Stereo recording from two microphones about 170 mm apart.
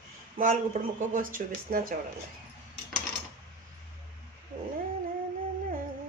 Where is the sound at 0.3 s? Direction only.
50° right (ahead or behind).